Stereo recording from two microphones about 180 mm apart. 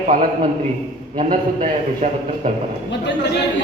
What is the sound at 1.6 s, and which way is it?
Speech, 40° right (ahead or behind).